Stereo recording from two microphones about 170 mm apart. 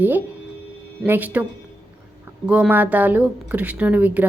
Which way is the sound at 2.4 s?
5° right (ahead or behind).